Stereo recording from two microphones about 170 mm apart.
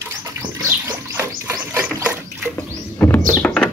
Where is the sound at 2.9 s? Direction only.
15° left (ahead or behind).